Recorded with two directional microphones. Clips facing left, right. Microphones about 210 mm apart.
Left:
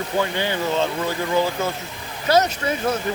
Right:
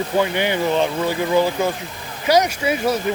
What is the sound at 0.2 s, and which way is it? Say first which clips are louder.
Speech: right 3 dB; 15° right (ahead or behind).